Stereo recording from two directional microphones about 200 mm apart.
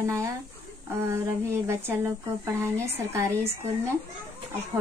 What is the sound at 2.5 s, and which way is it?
Speech, 15° right (ahead or behind).